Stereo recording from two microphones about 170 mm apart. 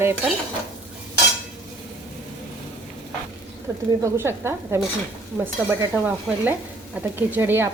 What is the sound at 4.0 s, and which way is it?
Stir, 15° right (ahead or behind).